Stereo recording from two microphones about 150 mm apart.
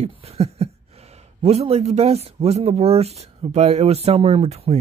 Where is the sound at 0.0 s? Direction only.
45° right (ahead or behind).